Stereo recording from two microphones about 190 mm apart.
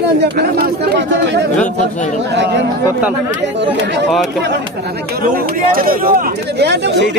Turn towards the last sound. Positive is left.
turn(degrees=-65)  # may be behind; listen again after turning